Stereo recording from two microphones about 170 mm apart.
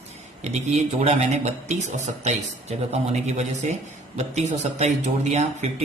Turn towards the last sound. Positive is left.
turn(degrees=-40)  # may be behind; listen again after turning